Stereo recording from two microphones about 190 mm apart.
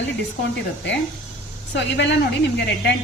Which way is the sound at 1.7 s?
65° left (ahead or behind).